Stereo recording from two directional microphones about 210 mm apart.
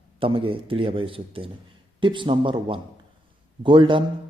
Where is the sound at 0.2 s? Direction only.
25° right (ahead or behind).